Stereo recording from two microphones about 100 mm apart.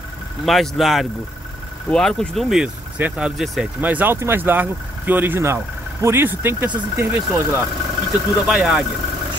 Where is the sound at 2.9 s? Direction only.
15° right (ahead or behind).